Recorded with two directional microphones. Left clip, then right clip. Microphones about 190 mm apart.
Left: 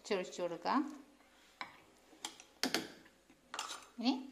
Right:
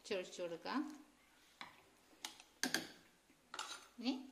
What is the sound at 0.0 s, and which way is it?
Speech, 20° left (ahead or behind).